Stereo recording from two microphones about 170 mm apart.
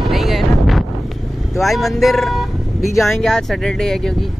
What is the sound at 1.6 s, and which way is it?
Speech, centre (ahead or behind).